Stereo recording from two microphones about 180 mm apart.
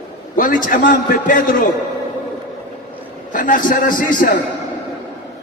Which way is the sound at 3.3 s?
45° left (ahead or behind).